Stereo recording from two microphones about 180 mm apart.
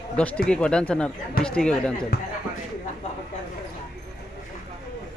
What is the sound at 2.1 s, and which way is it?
Speech, 60° left (ahead or behind).